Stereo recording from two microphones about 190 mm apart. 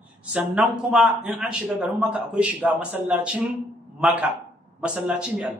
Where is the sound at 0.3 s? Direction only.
5° right (ahead or behind).